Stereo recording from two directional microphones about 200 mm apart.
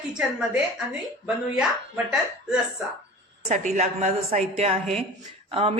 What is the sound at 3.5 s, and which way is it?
A woman's voice, 35° right (ahead or behind).